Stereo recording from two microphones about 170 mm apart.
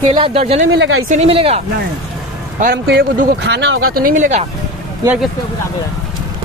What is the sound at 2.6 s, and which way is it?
Speech, 65° right (ahead or behind).